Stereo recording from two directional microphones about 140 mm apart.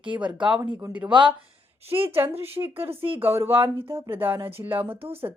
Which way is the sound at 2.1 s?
15° right (ahead or behind).